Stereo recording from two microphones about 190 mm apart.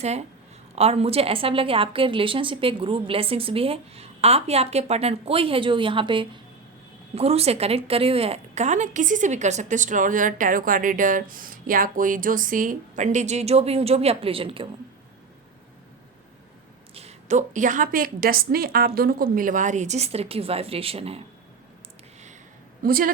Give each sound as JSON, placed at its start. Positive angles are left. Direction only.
{"t": 0.0, "sound": "a woman's voice", "side_deg": -35}
{"t": 16.9, "sound": "a woman's voice", "side_deg": -35}
{"t": 22.8, "sound": "a woman's voice", "side_deg": -50}